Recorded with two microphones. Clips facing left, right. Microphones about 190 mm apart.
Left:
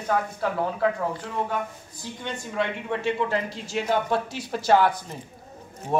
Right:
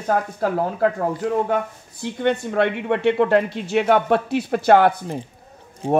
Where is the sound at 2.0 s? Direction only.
65° right (ahead or behind).